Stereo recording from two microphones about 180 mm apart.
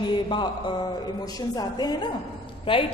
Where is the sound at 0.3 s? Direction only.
25° left (ahead or behind).